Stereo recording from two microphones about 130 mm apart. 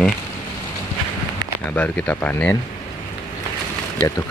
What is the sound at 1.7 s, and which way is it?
Speech, 10° left (ahead or behind).